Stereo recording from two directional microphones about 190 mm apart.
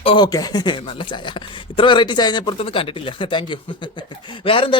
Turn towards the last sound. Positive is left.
turn(degrees=25)  # may be behind; listen again after turning